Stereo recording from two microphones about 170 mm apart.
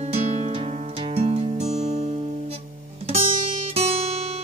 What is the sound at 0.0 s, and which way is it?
Music, 35° right (ahead or behind).